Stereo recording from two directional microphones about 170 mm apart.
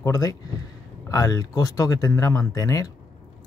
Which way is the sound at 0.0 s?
20° left (ahead or behind).